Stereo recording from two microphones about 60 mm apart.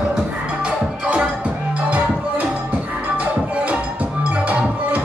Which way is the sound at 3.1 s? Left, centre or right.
Right.